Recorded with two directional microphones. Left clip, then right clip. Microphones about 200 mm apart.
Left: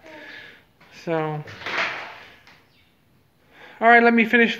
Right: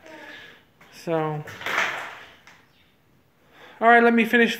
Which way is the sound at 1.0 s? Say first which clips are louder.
Even; centre (ahead or behind).